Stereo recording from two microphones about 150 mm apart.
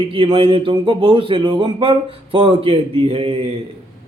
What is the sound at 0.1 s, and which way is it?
A man's voice, 35° right (ahead or behind).